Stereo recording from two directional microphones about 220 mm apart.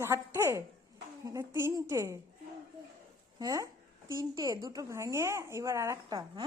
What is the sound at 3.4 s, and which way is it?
A woman's voice, 15° right (ahead or behind).